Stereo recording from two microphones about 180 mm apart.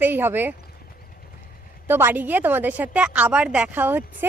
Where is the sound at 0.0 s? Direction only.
10° right (ahead or behind).